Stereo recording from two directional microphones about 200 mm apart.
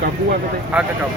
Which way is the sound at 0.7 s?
5° right (ahead or behind).